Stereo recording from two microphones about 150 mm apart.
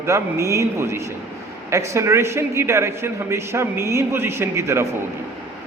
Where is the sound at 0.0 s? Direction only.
20° right (ahead or behind).